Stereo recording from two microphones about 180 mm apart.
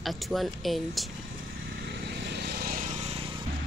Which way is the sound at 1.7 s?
65° right (ahead or behind).